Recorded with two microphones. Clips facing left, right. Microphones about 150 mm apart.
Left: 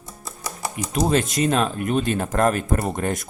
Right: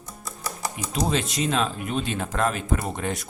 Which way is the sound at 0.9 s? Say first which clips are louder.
Left 5 dB; 50° left (ahead or behind).